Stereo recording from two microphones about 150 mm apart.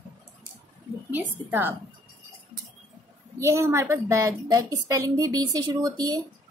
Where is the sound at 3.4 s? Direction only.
20° right (ahead or behind).